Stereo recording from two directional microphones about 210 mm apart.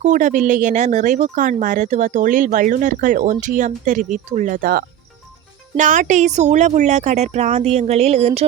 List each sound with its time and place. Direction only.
0.0 s speech: 35° right (ahead or behind)